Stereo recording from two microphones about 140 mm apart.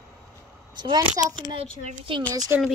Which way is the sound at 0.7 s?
30° right (ahead or behind).